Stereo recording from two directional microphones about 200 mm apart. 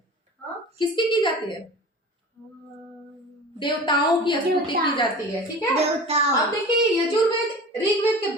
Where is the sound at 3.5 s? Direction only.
25° left (ahead or behind).